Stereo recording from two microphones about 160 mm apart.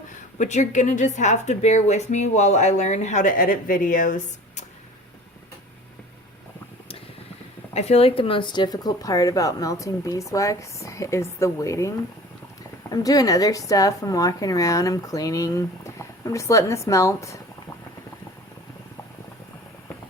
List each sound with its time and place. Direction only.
0.3 s a woman's voice: 50° left (ahead or behind)
7.7 s speech: 40° left (ahead or behind); by 17.4 s 20° left (ahead or behind)